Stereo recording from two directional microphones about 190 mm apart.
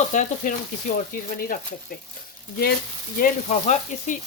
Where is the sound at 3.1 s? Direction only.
45° left (ahead or behind).